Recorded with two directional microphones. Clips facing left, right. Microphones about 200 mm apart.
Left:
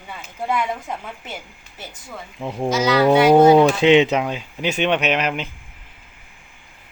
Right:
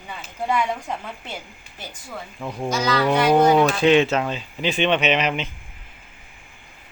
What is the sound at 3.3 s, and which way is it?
Speech, 25° left (ahead or behind).